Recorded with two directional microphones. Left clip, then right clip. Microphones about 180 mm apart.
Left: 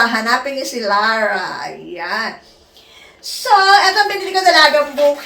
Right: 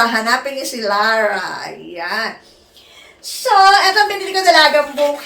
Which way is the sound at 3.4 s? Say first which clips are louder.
Even; 15° right (ahead or behind).